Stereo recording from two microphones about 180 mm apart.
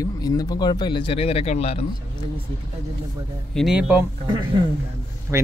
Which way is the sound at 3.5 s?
Centre (ahead or behind).